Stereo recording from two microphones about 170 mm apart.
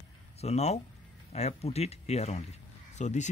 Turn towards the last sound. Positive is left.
turn(degrees=45)  # may be behind; listen again after turning